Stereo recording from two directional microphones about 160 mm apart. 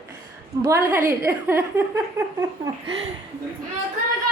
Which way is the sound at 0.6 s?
15° right (ahead or behind).